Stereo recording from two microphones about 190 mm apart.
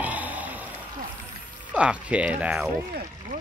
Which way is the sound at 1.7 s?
5° right (ahead or behind).